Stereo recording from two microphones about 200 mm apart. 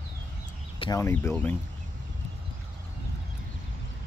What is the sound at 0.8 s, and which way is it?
Speech, 15° left (ahead or behind).